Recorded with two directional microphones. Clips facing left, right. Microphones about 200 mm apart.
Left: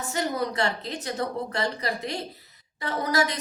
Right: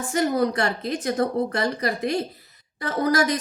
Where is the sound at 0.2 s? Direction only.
50° right (ahead or behind).